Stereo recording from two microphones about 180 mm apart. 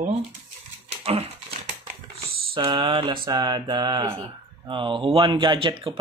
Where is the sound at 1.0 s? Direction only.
35° right (ahead or behind).